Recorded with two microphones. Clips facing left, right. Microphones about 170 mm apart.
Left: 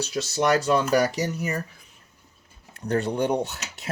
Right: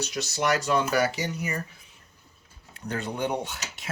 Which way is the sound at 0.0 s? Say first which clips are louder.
Left 4 dB; 30° left (ahead or behind).